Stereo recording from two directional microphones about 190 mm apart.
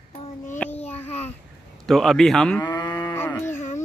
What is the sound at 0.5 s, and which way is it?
Babbling, 10° left (ahead or behind).